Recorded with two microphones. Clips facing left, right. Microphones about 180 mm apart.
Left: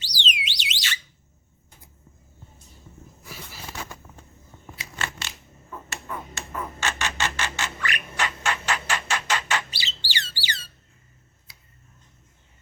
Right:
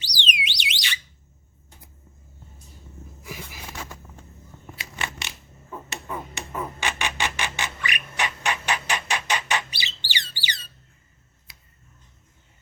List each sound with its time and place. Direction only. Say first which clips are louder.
0.0 s alarm: right 1 dB; 15° right (ahead or behind)
3.2 s a sound: right 4 dB; 15° right (ahead or behind)
5.0 s coin: even; 15° right (ahead or behind)
5.7 s squawk: right 2 dB; 20° right (ahead or behind)